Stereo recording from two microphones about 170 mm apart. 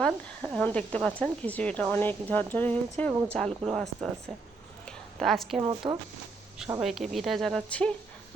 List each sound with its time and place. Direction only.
0.0 s speech: 5° left (ahead or behind)
4.9 s a sound: centre (ahead or behind)
5.8 s speech: 20° right (ahead or behind)
6.8 s speech: centre (ahead or behind)